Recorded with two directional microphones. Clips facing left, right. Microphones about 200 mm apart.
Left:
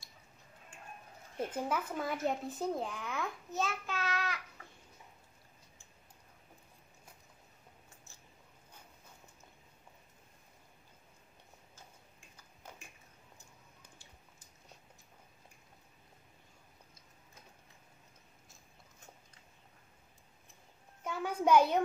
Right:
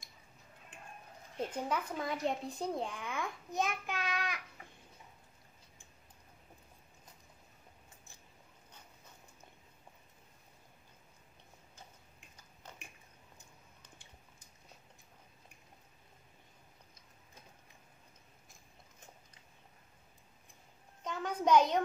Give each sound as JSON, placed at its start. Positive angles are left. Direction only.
{"t": 1.4, "sound": "a child's voice", "side_deg": 5}
{"t": 3.5, "sound": "child singing", "side_deg": -15}
{"t": 21.0, "sound": "a sound", "side_deg": 10}